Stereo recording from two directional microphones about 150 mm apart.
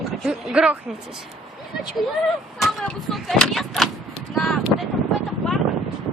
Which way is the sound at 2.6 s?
Centre (ahead or behind).